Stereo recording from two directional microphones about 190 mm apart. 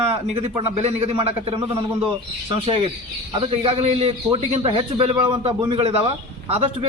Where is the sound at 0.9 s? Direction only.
35° right (ahead or behind).